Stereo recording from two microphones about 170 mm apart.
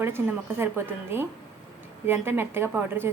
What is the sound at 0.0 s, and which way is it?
A woman's voice, 15° right (ahead or behind).